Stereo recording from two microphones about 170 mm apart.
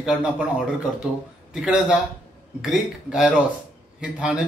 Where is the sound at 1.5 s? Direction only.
5° right (ahead or behind).